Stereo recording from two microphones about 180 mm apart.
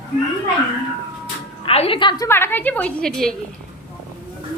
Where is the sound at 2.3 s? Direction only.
10° left (ahead or behind).